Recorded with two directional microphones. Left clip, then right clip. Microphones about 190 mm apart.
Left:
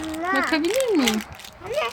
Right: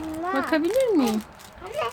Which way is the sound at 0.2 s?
15° right (ahead or behind).